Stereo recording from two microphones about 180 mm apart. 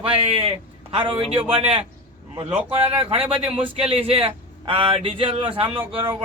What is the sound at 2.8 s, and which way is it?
A man's voice, 30° right (ahead or behind).